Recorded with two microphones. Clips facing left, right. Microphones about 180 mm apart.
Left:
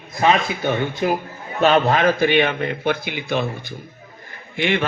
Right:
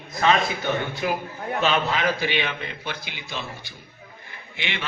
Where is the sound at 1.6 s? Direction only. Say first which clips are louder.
Left 8 dB; 50° left (ahead or behind).